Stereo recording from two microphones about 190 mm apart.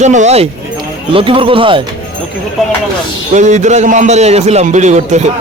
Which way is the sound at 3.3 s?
40° right (ahead or behind).